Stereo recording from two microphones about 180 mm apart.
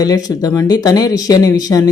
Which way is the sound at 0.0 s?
20° left (ahead or behind).